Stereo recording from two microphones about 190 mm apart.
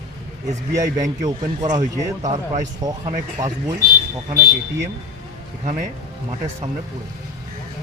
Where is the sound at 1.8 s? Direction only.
40° right (ahead or behind).